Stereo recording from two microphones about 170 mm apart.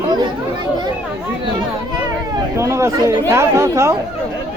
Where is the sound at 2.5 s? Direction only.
15° right (ahead or behind).